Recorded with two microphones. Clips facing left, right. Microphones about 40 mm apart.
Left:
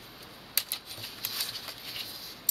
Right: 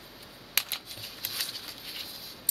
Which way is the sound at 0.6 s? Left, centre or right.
Right.